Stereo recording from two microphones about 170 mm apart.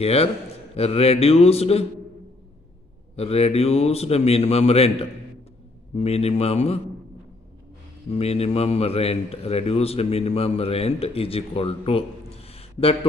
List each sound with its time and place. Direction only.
0.0 s speech: 35° left (ahead or behind)
3.2 s speech: 35° left (ahead or behind)
8.1 s speech: 35° left (ahead or behind)